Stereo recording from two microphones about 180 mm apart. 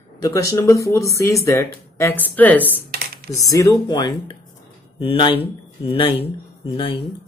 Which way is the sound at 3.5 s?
20° left (ahead or behind).